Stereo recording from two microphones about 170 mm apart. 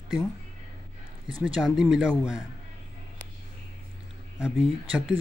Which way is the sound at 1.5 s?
Centre (ahead or behind).